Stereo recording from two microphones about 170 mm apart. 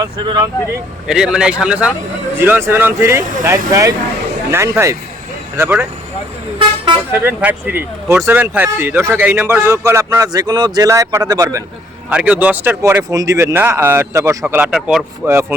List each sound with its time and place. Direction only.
0.0 s speech: 25° right (ahead or behind)
1.0 s a man's voice: 5° right (ahead or behind)
7.1 s a man's voice: 10° right (ahead or behind)
12.1 s a man's voice: 10° right (ahead or behind)
14.4 s speech: 5° right (ahead or behind)
15.3 s a man's voice: 15° right (ahead or behind)